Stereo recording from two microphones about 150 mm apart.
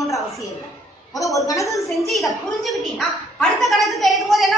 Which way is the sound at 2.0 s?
Centre (ahead or behind).